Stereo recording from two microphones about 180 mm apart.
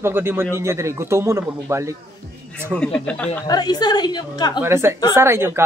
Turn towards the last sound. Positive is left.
turn(degrees=-15)  # may be behind; listen again after turning